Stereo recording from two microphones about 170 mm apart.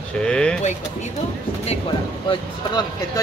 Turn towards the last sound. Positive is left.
turn(degrees=25)  # may be behind; listen again after turning